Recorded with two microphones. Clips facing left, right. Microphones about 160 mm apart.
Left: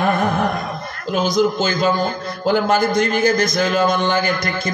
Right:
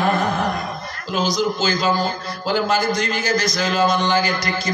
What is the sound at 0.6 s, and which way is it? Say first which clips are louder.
A man's voice: left 3 dB; 55° left (ahead or behind).